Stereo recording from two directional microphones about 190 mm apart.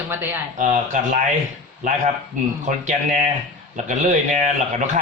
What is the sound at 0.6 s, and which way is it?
Speech, 45° right (ahead or behind).